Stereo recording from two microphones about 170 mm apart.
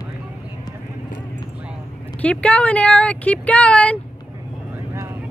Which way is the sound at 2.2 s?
10° left (ahead or behind).